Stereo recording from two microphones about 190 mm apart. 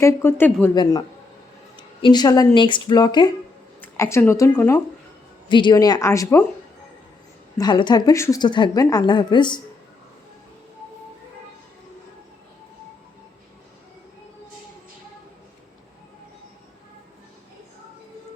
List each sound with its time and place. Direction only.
0.0 s a woman's voice: 10° left (ahead or behind)
5.5 s a woman's voice: 25° left (ahead or behind)
7.6 s a woman's voice: 25° left (ahead or behind)